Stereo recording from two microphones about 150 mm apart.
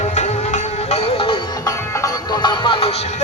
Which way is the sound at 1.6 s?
25° left (ahead or behind).